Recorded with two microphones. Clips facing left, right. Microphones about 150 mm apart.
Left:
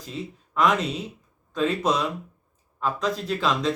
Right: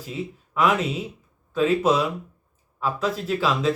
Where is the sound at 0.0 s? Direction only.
5° right (ahead or behind).